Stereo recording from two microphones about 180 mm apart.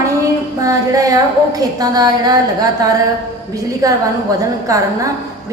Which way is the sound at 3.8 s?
20° right (ahead or behind).